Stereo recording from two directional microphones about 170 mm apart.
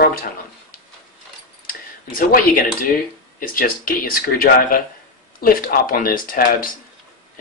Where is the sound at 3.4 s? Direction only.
55° left (ahead or behind).